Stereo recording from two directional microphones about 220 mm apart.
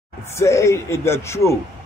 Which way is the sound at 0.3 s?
10° left (ahead or behind).